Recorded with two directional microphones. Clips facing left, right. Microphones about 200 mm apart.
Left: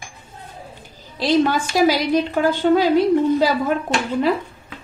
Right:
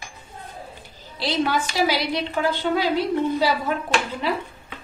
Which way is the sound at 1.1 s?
45° left (ahead or behind).